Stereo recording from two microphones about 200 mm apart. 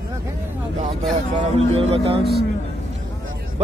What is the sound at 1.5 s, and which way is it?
Speech, 30° right (ahead or behind).